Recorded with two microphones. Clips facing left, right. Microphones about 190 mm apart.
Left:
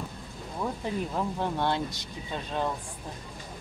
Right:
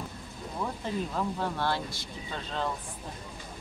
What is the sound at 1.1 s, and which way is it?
Speech, 20° left (ahead or behind).